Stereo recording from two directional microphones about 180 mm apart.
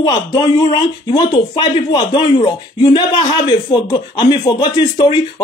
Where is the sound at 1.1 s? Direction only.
25° left (ahead or behind).